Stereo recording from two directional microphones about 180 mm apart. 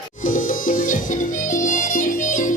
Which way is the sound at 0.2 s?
50° left (ahead or behind).